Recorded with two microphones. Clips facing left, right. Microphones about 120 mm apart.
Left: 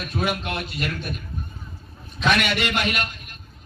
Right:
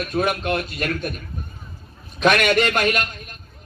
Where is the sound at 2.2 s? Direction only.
55° right (ahead or behind).